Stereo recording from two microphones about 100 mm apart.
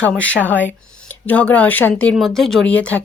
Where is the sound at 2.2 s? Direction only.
Centre (ahead or behind).